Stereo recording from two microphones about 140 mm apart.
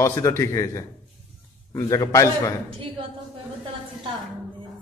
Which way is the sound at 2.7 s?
40° right (ahead or behind).